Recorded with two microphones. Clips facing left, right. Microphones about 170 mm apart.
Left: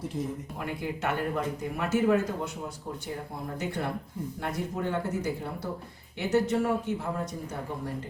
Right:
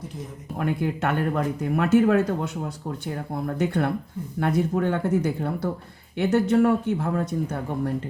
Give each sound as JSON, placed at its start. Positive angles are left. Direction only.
{"t": 0.6, "sound": "speech", "side_deg": -60}
{"t": 3.6, "sound": "speech", "side_deg": -60}